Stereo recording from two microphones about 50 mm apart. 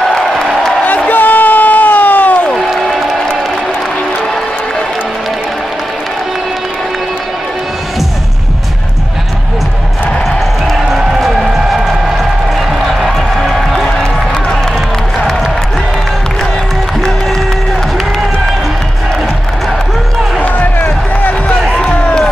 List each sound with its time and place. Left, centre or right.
0.8 s a sound: left
2.5 s applause: centre
10.9 s run: centre
12.8 s music: centre
20.4 s music: left